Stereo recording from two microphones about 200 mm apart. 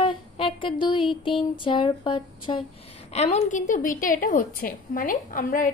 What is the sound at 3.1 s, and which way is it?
A woman's voice, 30° left (ahead or behind).